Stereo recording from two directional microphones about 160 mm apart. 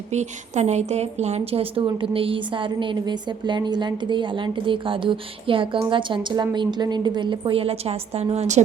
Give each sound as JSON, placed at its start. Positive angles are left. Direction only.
{"t": 0.1, "sound": "a woman's voice", "side_deg": -45}